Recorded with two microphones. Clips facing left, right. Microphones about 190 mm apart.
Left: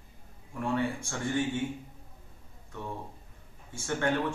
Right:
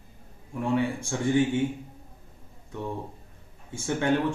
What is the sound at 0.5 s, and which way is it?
Speech, 15° right (ahead or behind).